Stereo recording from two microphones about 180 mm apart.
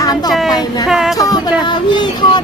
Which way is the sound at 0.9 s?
5° right (ahead or behind).